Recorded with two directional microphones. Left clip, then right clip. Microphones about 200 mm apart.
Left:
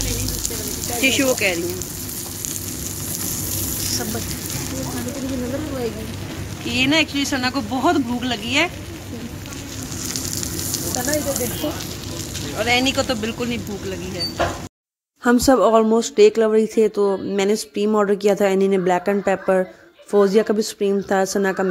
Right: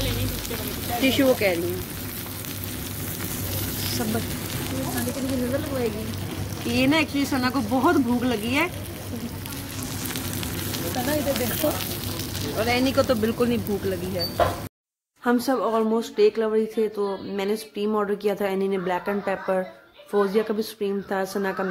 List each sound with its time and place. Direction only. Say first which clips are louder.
1.0 s speech: left 2 dB; 15° right (ahead or behind)
6.7 s speech: left 4 dB; centre (ahead or behind)
12.5 s speech: left 3 dB; centre (ahead or behind)
13.2 s speech: right 2 dB; 30° right (ahead or behind)
15.2 s speech: left 8 dB; 40° left (ahead or behind)